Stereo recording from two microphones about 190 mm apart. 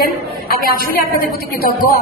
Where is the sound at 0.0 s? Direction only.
50° left (ahead or behind).